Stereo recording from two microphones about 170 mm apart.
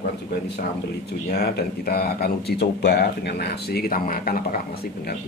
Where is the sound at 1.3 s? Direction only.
70° left (ahead or behind).